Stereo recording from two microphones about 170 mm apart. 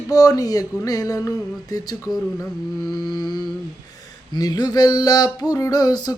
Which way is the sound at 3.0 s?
25° left (ahead or behind).